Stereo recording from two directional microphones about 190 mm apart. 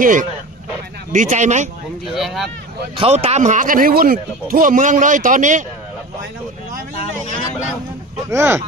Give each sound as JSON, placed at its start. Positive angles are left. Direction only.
{"t": 0.0, "sound": "speech", "side_deg": -45}
{"t": 2.1, "sound": "speech", "side_deg": 0}
{"t": 3.0, "sound": "speech", "side_deg": -35}
{"t": 8.3, "sound": "speech", "side_deg": -15}